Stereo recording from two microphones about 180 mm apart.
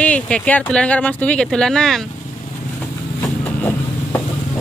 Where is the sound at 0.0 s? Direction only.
5° left (ahead or behind).